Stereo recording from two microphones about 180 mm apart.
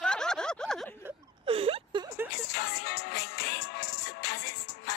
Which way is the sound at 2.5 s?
65° left (ahead or behind).